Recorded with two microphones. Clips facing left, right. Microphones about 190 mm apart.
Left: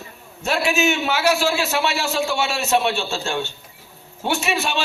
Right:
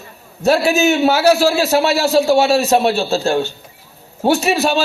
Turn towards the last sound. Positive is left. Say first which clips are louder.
# right 8 dB
turn(degrees=-40)  # may be behind; listen again after turning